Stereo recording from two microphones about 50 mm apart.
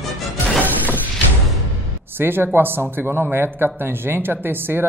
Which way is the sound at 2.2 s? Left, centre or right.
Right.